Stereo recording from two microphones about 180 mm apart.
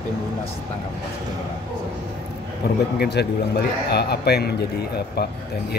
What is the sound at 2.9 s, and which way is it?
A man's voice, 65° left (ahead or behind).